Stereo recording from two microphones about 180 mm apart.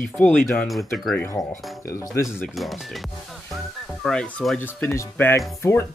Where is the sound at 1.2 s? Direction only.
20° left (ahead or behind).